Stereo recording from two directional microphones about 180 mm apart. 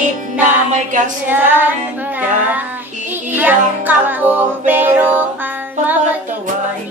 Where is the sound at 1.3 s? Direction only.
10° right (ahead or behind).